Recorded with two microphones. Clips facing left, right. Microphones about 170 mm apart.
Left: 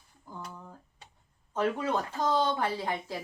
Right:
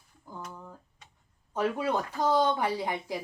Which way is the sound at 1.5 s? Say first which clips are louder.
Right 1 dB; 10° right (ahead or behind).